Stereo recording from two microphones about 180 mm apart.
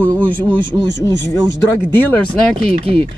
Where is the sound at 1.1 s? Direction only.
15° left (ahead or behind).